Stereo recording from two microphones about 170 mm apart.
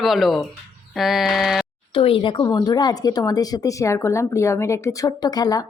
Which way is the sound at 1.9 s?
30° left (ahead or behind).